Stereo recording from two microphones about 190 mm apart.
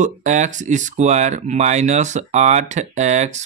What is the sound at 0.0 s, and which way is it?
Speech, 40° right (ahead or behind).